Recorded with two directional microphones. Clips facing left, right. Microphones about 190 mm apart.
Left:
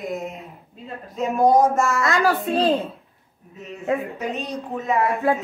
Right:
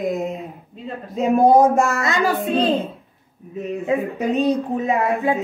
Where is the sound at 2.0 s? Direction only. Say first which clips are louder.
Even; centre (ahead or behind).